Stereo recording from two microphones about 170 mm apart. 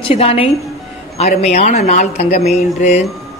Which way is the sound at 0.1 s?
35° left (ahead or behind).